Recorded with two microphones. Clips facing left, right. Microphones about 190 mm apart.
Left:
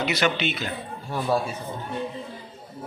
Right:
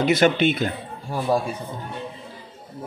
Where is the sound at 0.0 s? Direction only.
50° right (ahead or behind).